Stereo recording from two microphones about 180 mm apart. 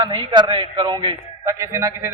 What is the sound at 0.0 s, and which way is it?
A man's voice, 25° right (ahead or behind).